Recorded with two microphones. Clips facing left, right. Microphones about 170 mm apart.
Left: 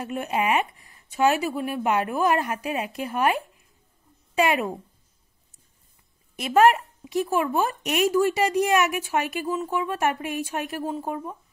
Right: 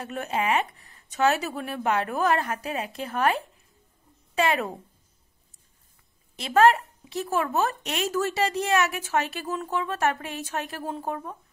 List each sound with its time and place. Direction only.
0.0 s speech: 15° left (ahead or behind)
6.5 s speech: 15° left (ahead or behind)